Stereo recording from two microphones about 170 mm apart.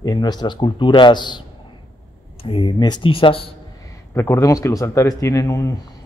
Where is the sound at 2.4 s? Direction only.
30° left (ahead or behind).